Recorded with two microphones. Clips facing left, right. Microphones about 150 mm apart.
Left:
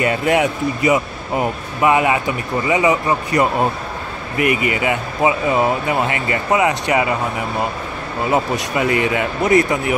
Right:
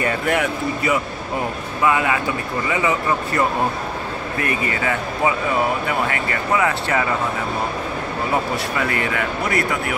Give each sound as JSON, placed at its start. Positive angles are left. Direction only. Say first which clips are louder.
{"t": 0.0, "sound": "speech", "louder": "left 4 dB", "side_deg": 20}
{"t": 8.3, "sound": "speech", "louder": "left 5 dB", "side_deg": 20}